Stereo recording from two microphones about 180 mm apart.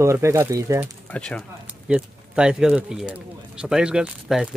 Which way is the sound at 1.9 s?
5° right (ahead or behind).